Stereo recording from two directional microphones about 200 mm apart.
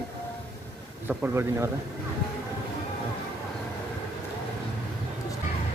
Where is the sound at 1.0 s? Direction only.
10° right (ahead or behind).